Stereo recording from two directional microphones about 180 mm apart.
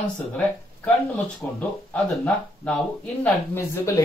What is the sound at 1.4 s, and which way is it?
Speech, 5° left (ahead or behind).